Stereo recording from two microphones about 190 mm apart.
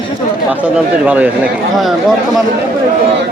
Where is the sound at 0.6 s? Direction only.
5° right (ahead or behind).